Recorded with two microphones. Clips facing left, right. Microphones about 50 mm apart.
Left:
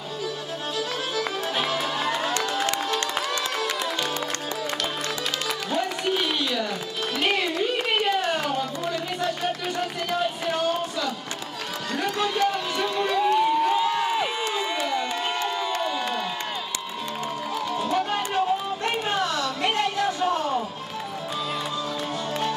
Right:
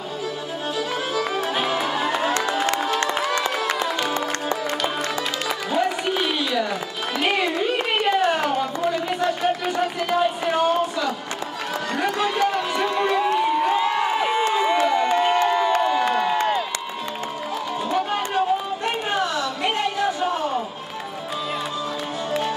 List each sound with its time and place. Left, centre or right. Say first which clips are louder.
0.7 s music: right 3 dB; centre
2.3 s music: right 3 dB; right
5.7 s a sound: right 3 dB; centre
12.4 s crowd: right 3 dB; right
17.8 s music: right 3 dB; centre
19.0 s a sound: right 3 dB; centre